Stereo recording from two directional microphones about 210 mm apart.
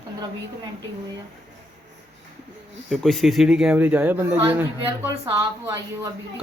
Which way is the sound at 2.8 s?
Centre (ahead or behind).